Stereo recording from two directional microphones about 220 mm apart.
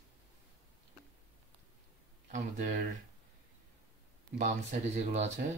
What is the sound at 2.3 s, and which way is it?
Speech, 35° right (ahead or behind).